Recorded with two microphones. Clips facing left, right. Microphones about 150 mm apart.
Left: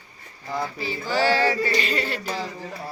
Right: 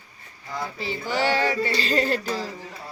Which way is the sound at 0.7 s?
25° right (ahead or behind).